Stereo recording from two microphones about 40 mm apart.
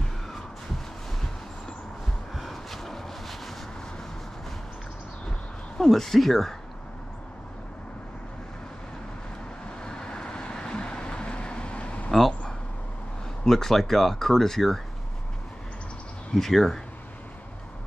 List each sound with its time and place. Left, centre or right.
2.3 s a sound: centre
5.8 s speech: centre
9.8 s vehicle: centre
12.1 s a sound: centre
13.5 s speech: centre
16.3 s speech: centre